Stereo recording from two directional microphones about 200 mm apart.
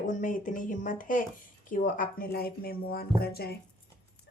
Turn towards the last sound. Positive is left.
turn(degrees=50)  # may be behind; listen again after turning